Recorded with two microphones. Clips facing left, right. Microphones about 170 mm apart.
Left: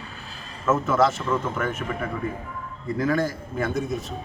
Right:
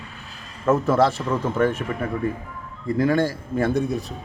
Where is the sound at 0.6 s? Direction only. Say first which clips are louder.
Right 2 dB; 35° right (ahead or behind).